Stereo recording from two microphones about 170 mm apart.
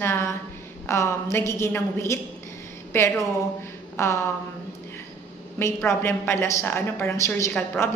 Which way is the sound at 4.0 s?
15° left (ahead or behind).